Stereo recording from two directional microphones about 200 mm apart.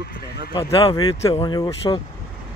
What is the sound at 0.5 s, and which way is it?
Speech, 25° left (ahead or behind).